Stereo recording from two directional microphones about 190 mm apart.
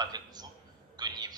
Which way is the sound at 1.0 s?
20° right (ahead or behind).